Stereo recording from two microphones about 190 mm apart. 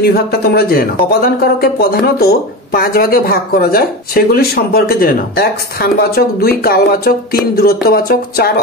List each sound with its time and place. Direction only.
0.0 s speech: 55° left (ahead or behind)